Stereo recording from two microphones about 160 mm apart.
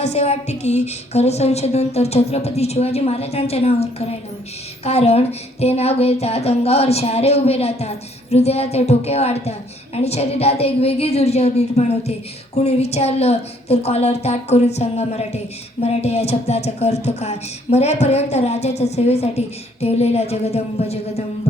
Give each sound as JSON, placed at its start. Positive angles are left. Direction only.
{"t": 0.0, "sound": "speech", "side_deg": 40}